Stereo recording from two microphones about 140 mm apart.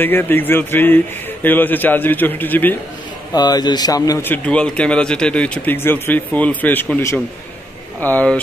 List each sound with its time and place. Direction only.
0.0 s speech: 15° left (ahead or behind)
3.3 s speech: 30° left (ahead or behind)
4.2 s speech: 10° left (ahead or behind)